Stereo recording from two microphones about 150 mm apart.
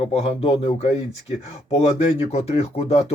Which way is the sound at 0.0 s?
40° left (ahead or behind).